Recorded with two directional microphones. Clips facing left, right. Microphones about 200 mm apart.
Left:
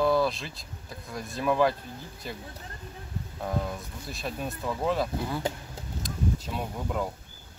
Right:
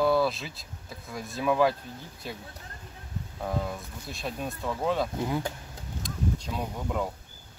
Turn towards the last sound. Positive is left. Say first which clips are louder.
# even
turn(degrees=0)  # may be behind; listen again after turning